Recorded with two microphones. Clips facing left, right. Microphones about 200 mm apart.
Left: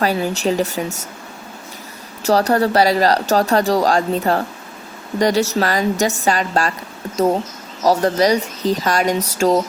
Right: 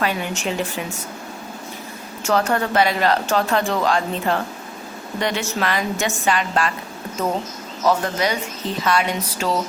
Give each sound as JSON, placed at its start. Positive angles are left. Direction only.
{"t": 0.0, "sound": "speech", "side_deg": 35}
{"t": 2.2, "sound": "speech", "side_deg": 35}
{"t": 7.9, "sound": "speech", "side_deg": 35}